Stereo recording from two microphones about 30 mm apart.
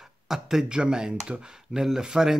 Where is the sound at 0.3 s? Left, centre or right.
Centre.